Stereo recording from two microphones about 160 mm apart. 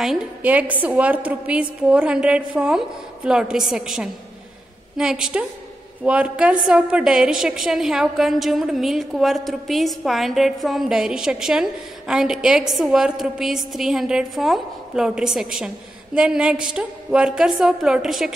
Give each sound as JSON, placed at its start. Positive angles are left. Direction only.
{"t": 0.0, "sound": "a woman's voice", "side_deg": -5}